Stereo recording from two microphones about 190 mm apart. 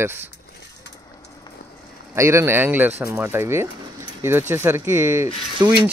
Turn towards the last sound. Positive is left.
turn(degrees=-15)  # may be behind; listen again after turning